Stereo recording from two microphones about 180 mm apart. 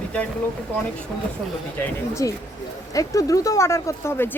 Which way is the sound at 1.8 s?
15° left (ahead or behind).